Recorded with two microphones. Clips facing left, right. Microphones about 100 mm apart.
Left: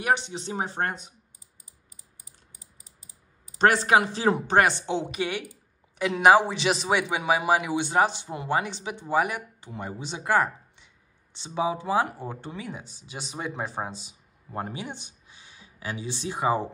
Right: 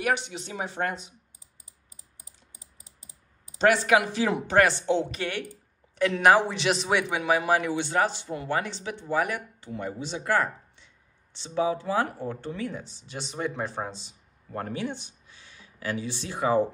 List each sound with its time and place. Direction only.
0.0 s speech: 30° left (ahead or behind)
3.5 s speech: 40° left (ahead or behind)
4.6 s a woman's voice: 20° left (ahead or behind)